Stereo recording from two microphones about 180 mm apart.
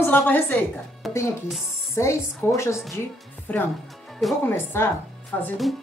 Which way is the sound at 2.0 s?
15° left (ahead or behind).